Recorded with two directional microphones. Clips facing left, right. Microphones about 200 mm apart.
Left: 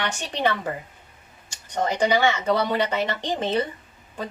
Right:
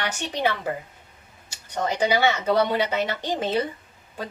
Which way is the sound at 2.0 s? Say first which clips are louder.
Even; 5° right (ahead or behind).